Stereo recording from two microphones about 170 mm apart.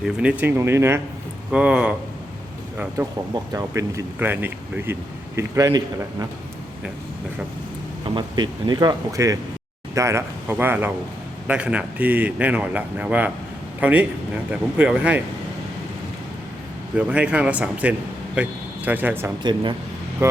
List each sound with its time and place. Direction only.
0.0 s speech: 5° right (ahead or behind)
3.5 s speech: 20° right (ahead or behind)
8.1 s speech: 25° right (ahead or behind); by 15.2 s 5° right (ahead or behind)
16.9 s speech: 5° right (ahead or behind)
19.4 s speech: 25° right (ahead or behind)